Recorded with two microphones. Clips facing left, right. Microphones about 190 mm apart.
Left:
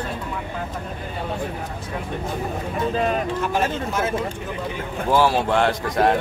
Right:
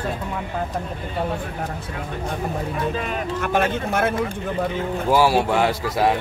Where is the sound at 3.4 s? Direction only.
60° right (ahead or behind).